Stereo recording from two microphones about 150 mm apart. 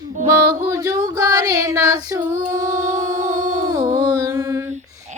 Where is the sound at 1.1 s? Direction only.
25° right (ahead or behind).